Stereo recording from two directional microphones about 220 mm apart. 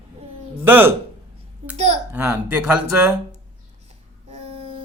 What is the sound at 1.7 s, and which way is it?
Speech, 30° right (ahead or behind).